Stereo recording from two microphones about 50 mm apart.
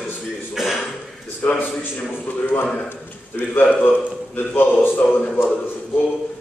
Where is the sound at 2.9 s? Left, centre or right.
Left.